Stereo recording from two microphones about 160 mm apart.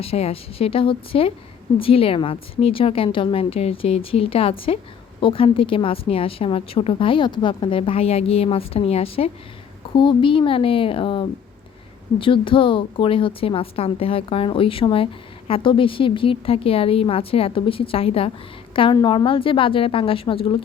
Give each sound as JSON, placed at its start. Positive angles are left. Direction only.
{"t": 0.0, "sound": "a woman's voice", "side_deg": 40}